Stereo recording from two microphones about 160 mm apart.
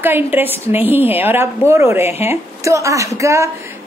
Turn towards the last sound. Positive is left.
turn(degrees=-20)  # may be behind; listen again after turning